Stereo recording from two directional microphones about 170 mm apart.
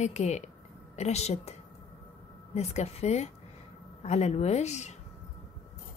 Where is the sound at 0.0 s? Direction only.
40° left (ahead or behind).